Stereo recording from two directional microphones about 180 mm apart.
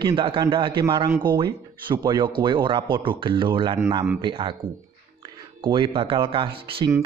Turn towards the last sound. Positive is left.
turn(degrees=-30)  # may be behind; listen again after turning